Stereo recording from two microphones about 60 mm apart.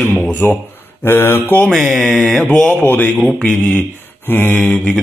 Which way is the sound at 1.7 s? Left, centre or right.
Centre.